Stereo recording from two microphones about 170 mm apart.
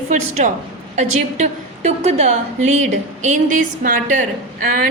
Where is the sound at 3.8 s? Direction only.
50° right (ahead or behind).